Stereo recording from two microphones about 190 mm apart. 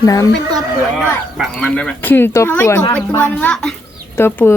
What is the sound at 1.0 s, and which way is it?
Speech, 5° left (ahead or behind).